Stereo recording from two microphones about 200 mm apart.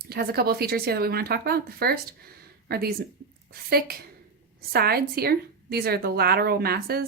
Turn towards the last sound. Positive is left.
turn(degrees=-50)  # may be behind; listen again after turning